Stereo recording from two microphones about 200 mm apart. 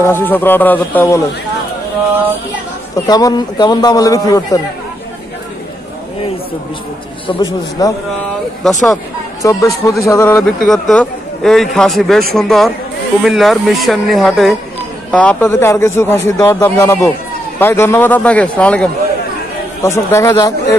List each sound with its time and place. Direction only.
0.0 s a man's voice: 10° left (ahead or behind)
3.1 s a man's voice: 20° left (ahead or behind)
7.2 s a man's voice: 20° left (ahead or behind)
9.4 s a man's voice: 15° left (ahead or behind)